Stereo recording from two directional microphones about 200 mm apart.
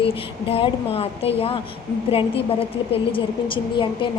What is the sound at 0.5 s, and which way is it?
A woman's voice, 30° left (ahead or behind).